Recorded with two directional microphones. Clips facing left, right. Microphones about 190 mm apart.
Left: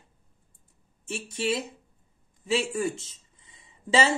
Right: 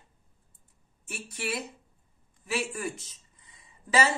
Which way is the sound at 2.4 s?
25° left (ahead or behind).